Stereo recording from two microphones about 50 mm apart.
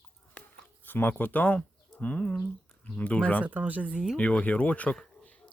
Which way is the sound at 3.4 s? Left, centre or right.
Right.